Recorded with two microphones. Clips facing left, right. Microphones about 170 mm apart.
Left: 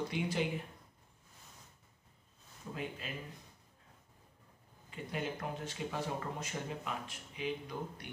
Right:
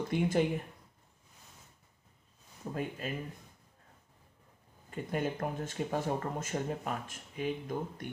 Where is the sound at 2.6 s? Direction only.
50° right (ahead or behind).